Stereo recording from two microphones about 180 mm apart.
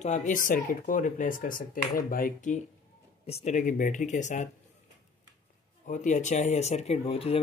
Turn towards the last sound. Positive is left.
turn(degrees=35)  # may be behind; listen again after turning